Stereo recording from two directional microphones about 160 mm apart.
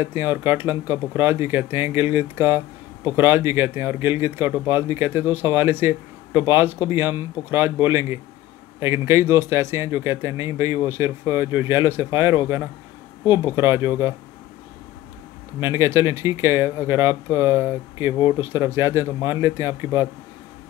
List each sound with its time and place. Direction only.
0.0 s a man's voice: 15° right (ahead or behind)
15.6 s a man's voice: 15° right (ahead or behind)